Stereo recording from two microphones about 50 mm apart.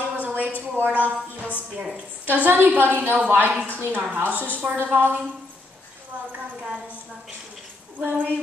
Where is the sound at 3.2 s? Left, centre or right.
Right.